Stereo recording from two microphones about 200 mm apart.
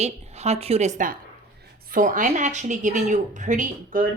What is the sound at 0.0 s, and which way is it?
Speech, 35° right (ahead or behind).